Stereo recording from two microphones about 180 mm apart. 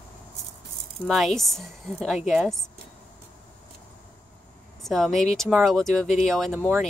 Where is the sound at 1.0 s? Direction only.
Centre (ahead or behind).